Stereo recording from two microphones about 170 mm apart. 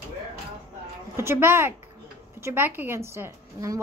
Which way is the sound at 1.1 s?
15° right (ahead or behind).